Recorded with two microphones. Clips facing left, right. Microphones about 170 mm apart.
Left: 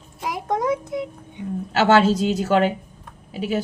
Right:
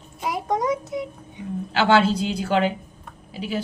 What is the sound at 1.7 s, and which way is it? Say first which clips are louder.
A woman's voice: left 2 dB; 40° left (ahead or behind).